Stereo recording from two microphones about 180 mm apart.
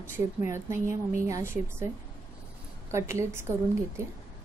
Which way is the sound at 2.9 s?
15° right (ahead or behind).